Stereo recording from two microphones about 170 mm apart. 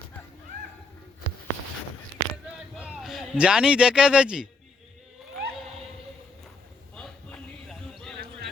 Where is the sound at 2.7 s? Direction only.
Centre (ahead or behind).